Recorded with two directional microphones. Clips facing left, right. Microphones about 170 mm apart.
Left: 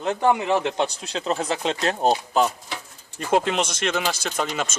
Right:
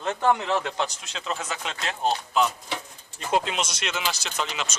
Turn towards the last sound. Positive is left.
turn(degrees=50)  # may be behind; listen again after turning